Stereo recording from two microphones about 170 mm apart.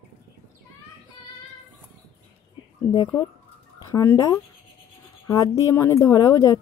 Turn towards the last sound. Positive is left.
turn(degrees=20)  # may be behind; listen again after turning